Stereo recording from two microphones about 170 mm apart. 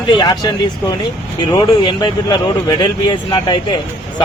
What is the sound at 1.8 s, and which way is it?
Speech, 30° left (ahead or behind).